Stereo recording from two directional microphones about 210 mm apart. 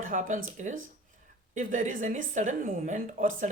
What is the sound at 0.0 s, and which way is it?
Speech, 40° right (ahead or behind).